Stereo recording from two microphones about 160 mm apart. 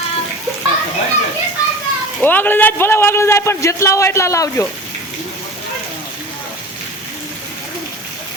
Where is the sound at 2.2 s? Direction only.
10° left (ahead or behind).